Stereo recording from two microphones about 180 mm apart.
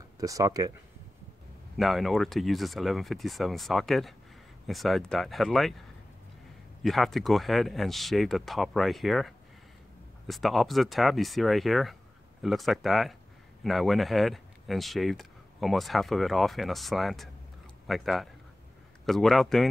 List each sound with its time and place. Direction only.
0.2 s speech: 20° right (ahead or behind)
1.8 s speech: centre (ahead or behind)
6.8 s speech: centre (ahead or behind)